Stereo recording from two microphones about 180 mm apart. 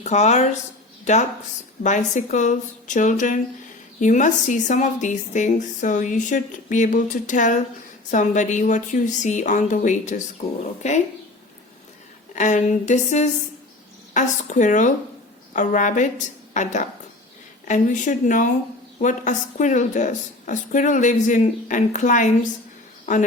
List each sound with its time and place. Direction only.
0.0 s a woman's voice: 40° left (ahead or behind)
12.3 s a woman's voice: 45° left (ahead or behind)